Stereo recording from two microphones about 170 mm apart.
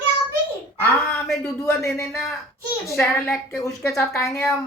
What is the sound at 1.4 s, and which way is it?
Speech, 10° left (ahead or behind).